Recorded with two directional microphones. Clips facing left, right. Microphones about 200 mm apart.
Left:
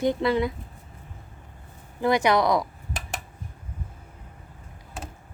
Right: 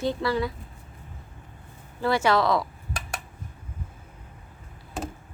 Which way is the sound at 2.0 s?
15° left (ahead or behind).